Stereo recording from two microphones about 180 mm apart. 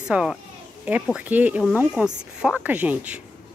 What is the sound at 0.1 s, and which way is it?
A woman's voice, 5° right (ahead or behind).